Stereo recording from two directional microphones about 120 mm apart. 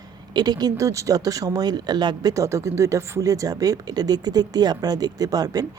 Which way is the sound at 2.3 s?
25° right (ahead or behind).